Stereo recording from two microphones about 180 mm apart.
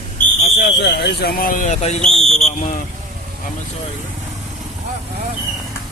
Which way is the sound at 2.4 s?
45° left (ahead or behind).